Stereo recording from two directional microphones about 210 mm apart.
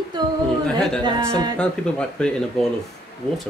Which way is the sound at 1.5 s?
5° left (ahead or behind).